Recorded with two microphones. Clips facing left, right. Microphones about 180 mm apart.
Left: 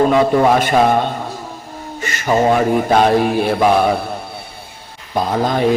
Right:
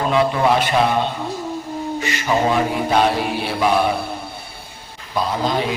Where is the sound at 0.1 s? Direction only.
50° left (ahead or behind).